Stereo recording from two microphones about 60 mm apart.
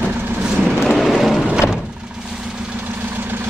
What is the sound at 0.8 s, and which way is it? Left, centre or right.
Vehicle, centre.